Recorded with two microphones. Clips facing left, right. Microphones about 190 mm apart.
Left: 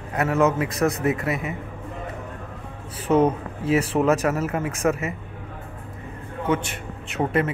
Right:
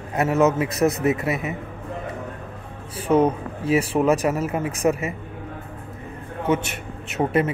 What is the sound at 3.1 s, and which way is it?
Speech, 5° right (ahead or behind).